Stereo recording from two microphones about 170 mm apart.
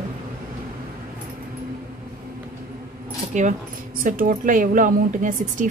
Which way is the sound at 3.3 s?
45° right (ahead or behind).